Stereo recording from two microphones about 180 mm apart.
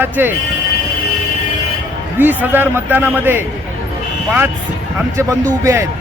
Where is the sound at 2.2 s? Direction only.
10° right (ahead or behind).